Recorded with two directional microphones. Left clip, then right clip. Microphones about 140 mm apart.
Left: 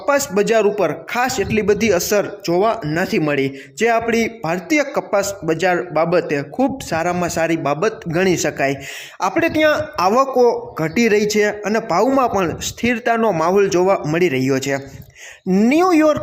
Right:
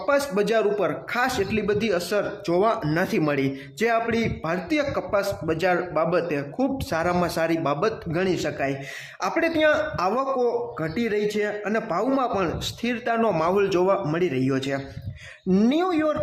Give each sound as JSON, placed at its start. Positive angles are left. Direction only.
{"t": 0.0, "sound": "a man's voice", "side_deg": 30}
{"t": 2.5, "sound": "a man's voice", "side_deg": 20}
{"t": 15.4, "sound": "speech", "side_deg": 15}
{"t": 15.8, "sound": "speech", "side_deg": 45}